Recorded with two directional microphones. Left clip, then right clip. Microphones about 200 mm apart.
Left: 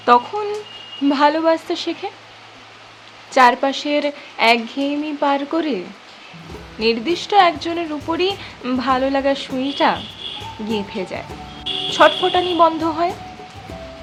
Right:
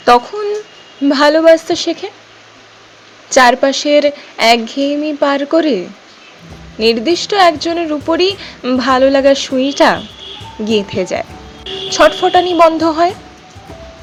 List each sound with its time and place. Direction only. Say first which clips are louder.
1.0 s speech: right 7 dB; 25° right (ahead or behind)
3.3 s speech: right 5 dB; 25° right (ahead or behind)